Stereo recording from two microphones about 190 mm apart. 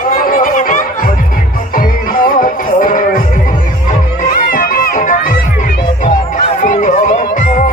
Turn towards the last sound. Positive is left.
turn(degrees=45)  # may be behind; listen again after turning